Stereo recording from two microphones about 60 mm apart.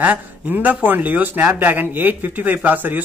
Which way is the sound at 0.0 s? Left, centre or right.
Right.